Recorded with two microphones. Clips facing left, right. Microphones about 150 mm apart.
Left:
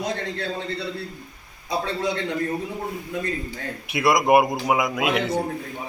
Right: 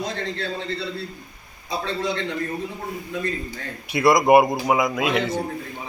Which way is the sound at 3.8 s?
Centre (ahead or behind).